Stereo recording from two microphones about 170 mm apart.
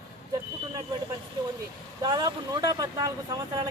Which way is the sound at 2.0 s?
25° right (ahead or behind).